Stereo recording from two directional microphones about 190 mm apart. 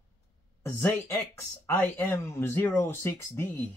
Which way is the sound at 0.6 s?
10° left (ahead or behind).